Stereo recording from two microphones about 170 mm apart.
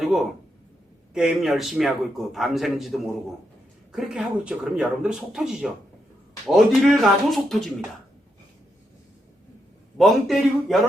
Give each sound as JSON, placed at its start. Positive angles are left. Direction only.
{"t": 0.0, "sound": "a man's voice", "side_deg": 0}
{"t": 10.0, "sound": "a man's voice", "side_deg": 0}